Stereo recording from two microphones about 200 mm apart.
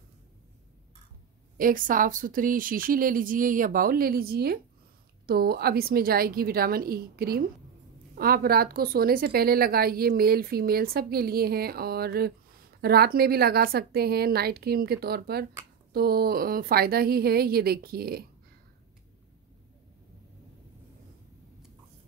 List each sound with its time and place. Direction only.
1.6 s a woman's voice: 45° right (ahead or behind)